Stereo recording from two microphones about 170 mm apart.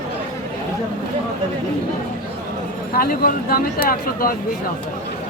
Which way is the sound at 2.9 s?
60° left (ahead or behind).